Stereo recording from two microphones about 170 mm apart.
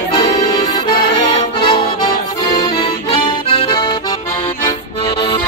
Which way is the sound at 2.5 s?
30° left (ahead or behind).